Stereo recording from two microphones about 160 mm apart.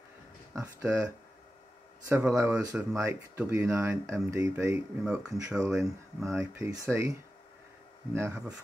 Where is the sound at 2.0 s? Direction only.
15° right (ahead or behind).